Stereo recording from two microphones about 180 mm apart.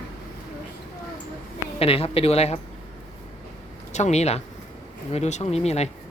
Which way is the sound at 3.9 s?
40° left (ahead or behind).